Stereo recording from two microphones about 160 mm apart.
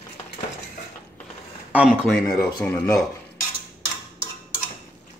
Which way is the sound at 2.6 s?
20° left (ahead or behind).